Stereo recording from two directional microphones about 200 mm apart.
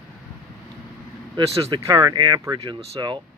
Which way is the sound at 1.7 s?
20° right (ahead or behind).